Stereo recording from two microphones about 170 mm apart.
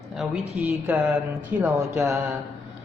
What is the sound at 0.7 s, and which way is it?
Speech, 10° right (ahead or behind).